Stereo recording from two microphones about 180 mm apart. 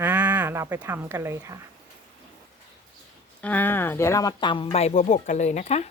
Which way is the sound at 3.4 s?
10° left (ahead or behind).